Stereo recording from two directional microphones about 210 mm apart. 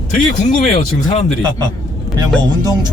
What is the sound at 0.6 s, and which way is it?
Speech, 30° left (ahead or behind).